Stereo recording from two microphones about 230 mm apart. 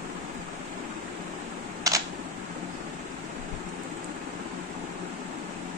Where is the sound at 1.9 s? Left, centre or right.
Centre.